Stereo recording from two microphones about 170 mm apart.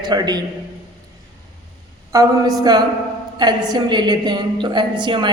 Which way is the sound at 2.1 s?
20° right (ahead or behind).